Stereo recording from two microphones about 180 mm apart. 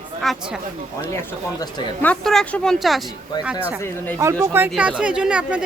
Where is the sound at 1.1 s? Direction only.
20° left (ahead or behind).